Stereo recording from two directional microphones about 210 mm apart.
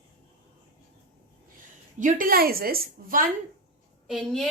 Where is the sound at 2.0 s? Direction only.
40° right (ahead or behind).